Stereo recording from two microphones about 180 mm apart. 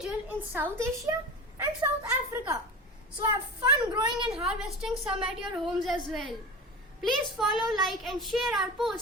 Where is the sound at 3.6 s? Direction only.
25° right (ahead or behind).